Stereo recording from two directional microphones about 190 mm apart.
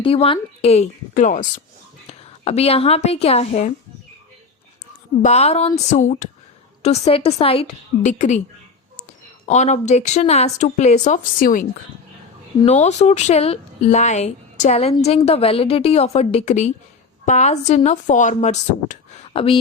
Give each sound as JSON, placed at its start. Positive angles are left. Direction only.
{"t": 0.0, "sound": "a woman's voice", "side_deg": 30}
{"t": 5.2, "sound": "speech", "side_deg": 35}
{"t": 9.5, "sound": "speech", "side_deg": 35}
{"t": 12.6, "sound": "speech", "side_deg": 35}